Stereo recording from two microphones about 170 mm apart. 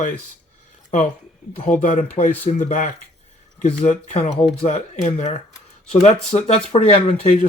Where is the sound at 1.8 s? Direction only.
45° left (ahead or behind).